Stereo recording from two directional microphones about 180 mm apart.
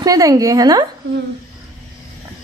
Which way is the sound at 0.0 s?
20° right (ahead or behind).